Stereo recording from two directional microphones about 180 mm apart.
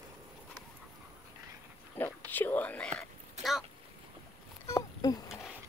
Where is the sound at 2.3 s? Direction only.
10° left (ahead or behind).